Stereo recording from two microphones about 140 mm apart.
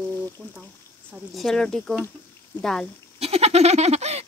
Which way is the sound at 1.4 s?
Centre (ahead or behind).